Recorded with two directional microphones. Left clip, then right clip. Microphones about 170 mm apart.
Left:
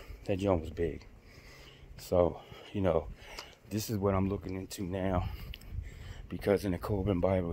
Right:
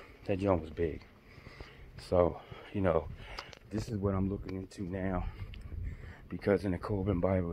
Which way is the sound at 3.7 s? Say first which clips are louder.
Left 4 dB; 25° left (ahead or behind).